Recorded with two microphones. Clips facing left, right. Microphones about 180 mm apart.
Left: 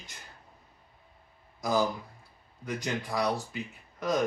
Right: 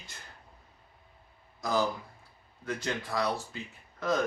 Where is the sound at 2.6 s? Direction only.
15° left (ahead or behind).